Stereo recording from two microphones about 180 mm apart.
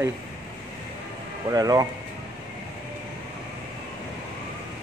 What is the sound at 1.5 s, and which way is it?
Speech, 20° right (ahead or behind).